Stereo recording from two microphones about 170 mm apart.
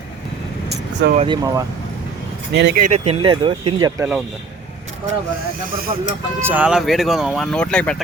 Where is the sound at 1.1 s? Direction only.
30° right (ahead or behind).